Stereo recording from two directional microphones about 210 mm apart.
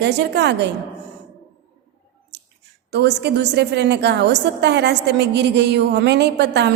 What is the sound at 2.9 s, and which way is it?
A woman's voice, 55° right (ahead or behind).